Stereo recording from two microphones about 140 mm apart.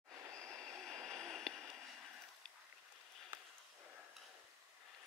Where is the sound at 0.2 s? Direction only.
20° right (ahead or behind).